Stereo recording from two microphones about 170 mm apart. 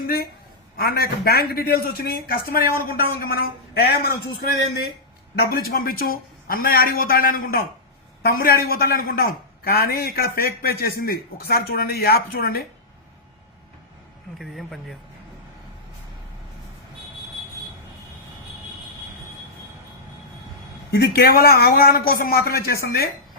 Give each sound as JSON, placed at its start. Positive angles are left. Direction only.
{"t": 0.0, "sound": "a woman's voice", "side_deg": 60}
{"t": 5.4, "sound": "speech", "side_deg": 65}
{"t": 14.3, "sound": "speech", "side_deg": 0}
{"t": 20.9, "sound": "speech", "side_deg": 65}